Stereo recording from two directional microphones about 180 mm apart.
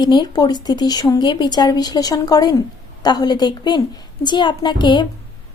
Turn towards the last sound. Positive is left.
turn(degrees=25)  # may be behind; listen again after turning